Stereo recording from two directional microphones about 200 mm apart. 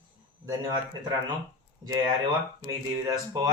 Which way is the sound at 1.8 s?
20° right (ahead or behind).